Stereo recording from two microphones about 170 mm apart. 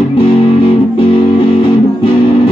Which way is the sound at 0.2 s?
30° left (ahead or behind).